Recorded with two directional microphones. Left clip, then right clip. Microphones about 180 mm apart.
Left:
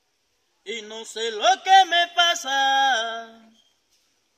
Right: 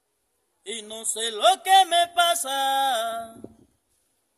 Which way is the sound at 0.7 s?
45° right (ahead or behind).